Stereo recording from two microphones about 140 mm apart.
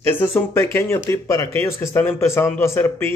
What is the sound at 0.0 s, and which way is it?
Speech, 15° left (ahead or behind).